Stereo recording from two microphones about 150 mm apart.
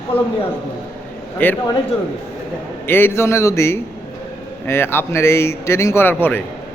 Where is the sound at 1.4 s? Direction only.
10° left (ahead or behind).